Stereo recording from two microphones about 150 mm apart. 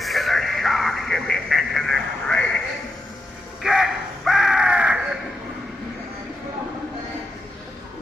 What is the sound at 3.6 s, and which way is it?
Crow, 5° right (ahead or behind).